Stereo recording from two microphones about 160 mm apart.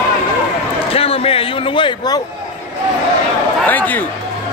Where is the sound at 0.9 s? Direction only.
35° left (ahead or behind).